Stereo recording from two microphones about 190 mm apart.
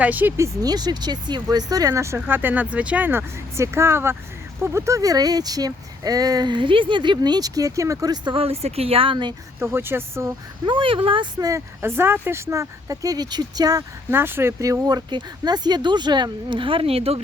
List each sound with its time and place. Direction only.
0.0 s speech: 10° right (ahead or behind); by 9.3 s 25° right (ahead or behind)
9.6 s speech: 10° right (ahead or behind)
10.7 s speech: 25° right (ahead or behind)